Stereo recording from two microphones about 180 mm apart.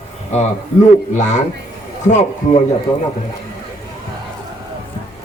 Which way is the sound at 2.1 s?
40° left (ahead or behind).